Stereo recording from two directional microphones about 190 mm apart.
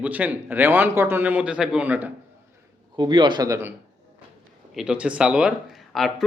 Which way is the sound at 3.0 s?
25° right (ahead or behind).